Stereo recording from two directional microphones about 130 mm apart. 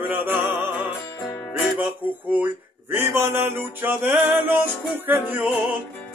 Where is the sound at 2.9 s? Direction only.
20° right (ahead or behind).